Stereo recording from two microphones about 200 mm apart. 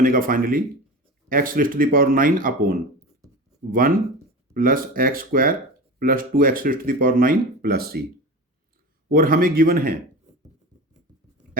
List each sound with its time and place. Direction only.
0.0 s speech: 45° right (ahead or behind)
9.0 s speech: 45° right (ahead or behind)